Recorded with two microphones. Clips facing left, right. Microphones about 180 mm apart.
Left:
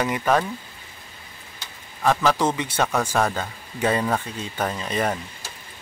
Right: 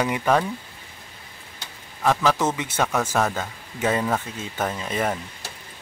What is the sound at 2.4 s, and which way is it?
Speech, 10° right (ahead or behind).